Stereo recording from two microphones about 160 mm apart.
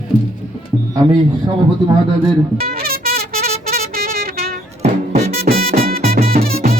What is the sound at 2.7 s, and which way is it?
Music, 70° right (ahead or behind).